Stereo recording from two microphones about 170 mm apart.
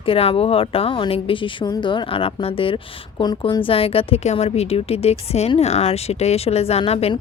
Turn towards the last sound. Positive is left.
turn(degrees=35)  # may be behind; listen again after turning